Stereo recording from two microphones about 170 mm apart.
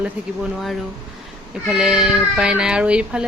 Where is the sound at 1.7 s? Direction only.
5° right (ahead or behind).